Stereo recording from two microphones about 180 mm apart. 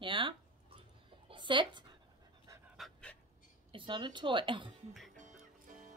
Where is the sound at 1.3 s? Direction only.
25° right (ahead or behind).